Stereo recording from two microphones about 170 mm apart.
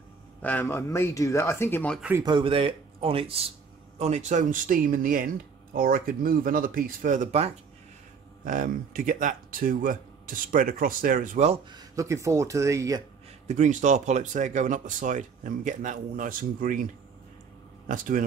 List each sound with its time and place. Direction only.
0.4 s speech: 10° left (ahead or behind)
2.0 s speech: 10° right (ahead or behind)
2.2 s speech: 30° right (ahead or behind)
8.5 s speech: 50° right (ahead or behind)
11.7 s speech: 20° right (ahead or behind)
13.5 s speech: 45° right (ahead or behind)